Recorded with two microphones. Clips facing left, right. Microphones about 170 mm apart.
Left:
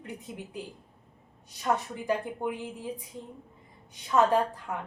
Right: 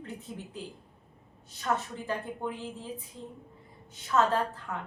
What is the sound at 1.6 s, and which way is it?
A woman's voice, 15° left (ahead or behind).